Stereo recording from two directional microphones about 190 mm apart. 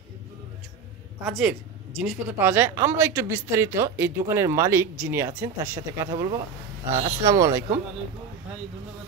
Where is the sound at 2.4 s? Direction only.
10° right (ahead or behind).